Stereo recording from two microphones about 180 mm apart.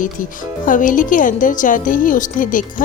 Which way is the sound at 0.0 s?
45° left (ahead or behind).